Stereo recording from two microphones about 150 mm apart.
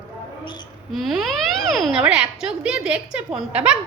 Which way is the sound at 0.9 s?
Centre (ahead or behind).